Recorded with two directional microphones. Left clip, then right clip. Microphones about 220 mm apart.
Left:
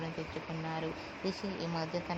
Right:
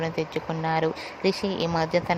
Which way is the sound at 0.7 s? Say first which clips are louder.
Right 15 dB; 30° right (ahead or behind).